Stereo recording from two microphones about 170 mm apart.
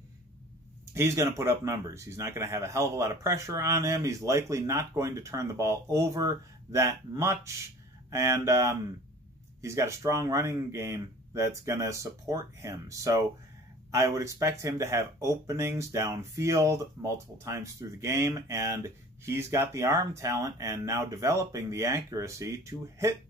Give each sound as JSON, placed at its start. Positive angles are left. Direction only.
{"t": 0.9, "sound": "speech", "side_deg": -15}